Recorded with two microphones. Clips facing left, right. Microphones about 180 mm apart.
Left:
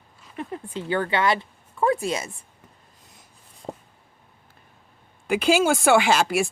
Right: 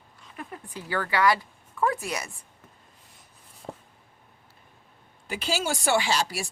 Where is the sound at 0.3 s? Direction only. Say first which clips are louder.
Left 7 dB; 25° left (ahead or behind).